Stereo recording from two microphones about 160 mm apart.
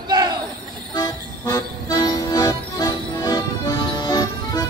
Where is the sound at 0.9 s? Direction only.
20° left (ahead or behind).